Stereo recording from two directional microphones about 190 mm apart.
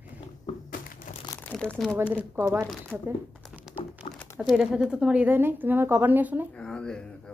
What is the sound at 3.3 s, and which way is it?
Crumpling, 5° right (ahead or behind).